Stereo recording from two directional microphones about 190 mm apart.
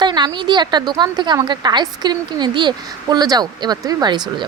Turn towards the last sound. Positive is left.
turn(degrees=-20)  # may be behind; listen again after turning